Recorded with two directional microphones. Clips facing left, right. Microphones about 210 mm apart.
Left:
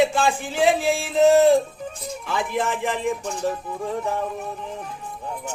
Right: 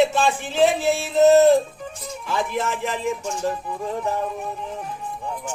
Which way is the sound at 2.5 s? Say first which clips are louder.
Left 1 dB; 15° left (ahead or behind).